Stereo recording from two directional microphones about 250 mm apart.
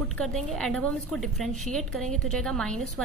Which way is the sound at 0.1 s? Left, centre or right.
Centre.